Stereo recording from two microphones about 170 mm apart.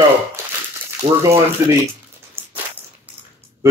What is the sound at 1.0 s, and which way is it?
Speech, 20° right (ahead or behind).